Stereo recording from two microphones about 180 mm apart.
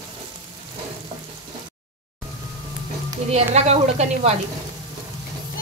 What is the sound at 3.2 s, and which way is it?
Speech, 35° right (ahead or behind).